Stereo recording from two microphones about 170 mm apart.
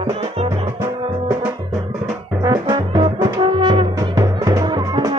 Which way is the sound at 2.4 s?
25° right (ahead or behind).